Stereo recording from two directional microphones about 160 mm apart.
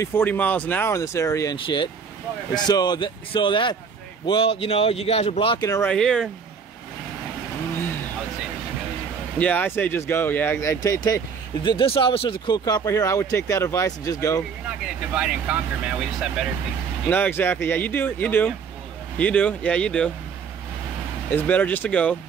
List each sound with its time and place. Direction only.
0.0 s speech: 15° left (ahead or behind); by 5.7 s 35° left (ahead or behind)
5.9 s speech: 5° left (ahead or behind)
9.4 s speech: 10° left (ahead or behind)
11.7 s speech: 35° left (ahead or behind)
15.1 s speech: 10° right (ahead or behind)
17.1 s speech: 10° left (ahead or behind)
21.3 s speech: 10° left (ahead or behind)